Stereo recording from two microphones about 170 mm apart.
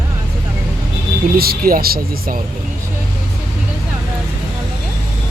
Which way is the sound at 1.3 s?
65° right (ahead or behind).